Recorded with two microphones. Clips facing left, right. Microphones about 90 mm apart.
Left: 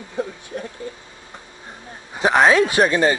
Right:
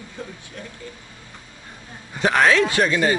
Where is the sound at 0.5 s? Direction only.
25° left (ahead or behind).